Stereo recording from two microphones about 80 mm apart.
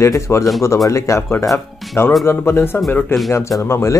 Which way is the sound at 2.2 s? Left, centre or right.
Left.